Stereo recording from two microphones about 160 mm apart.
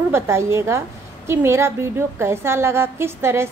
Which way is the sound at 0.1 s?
15° right (ahead or behind).